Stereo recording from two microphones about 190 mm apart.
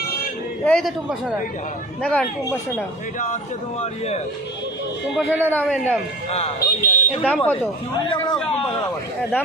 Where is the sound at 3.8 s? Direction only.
35° left (ahead or behind).